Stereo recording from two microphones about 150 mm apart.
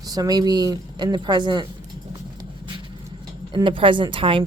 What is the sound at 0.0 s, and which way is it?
Speech, 25° right (ahead or behind).